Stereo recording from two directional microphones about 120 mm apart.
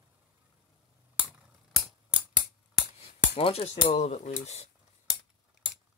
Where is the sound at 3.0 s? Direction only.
55° left (ahead or behind); by 4.6 s 75° left (ahead or behind).